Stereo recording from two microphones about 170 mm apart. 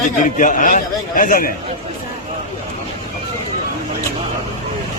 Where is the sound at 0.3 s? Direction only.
50° left (ahead or behind).